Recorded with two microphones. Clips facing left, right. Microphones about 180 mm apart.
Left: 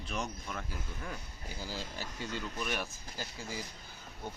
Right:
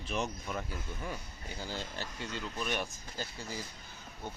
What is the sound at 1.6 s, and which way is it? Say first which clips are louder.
Speech: right 1 dB; 10° left (ahead or behind).